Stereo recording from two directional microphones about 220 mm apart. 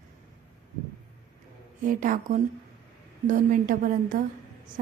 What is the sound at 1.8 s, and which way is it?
A woman's voice, 35° right (ahead or behind).